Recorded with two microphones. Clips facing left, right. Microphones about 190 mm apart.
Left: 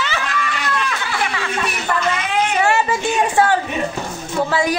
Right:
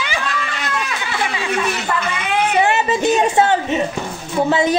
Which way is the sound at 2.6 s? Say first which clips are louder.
Right 2 dB; 20° right (ahead or behind).